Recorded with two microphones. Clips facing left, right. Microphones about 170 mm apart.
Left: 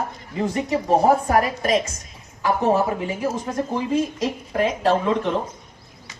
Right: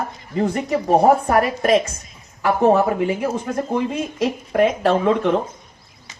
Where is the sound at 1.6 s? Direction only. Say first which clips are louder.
Right 4 dB; 60° right (ahead or behind).